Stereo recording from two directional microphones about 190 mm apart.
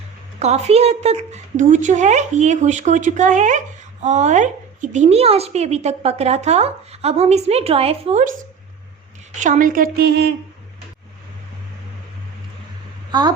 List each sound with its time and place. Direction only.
0.3 s a woman's voice: 35° right (ahead or behind)
9.4 s a woman's voice: 45° right (ahead or behind)
13.1 s a child's voice: 20° right (ahead or behind)